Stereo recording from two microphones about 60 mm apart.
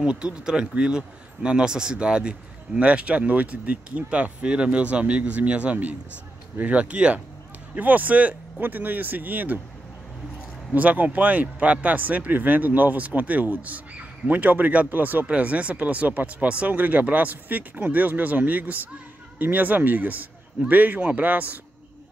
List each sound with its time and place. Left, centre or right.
0.0 s speech: centre
10.7 s speech: right